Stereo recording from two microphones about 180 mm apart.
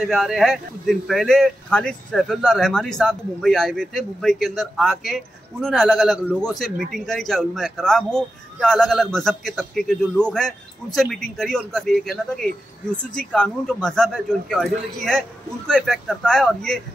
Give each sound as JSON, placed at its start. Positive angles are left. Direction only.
{"t": 0.0, "sound": "speech", "side_deg": 0}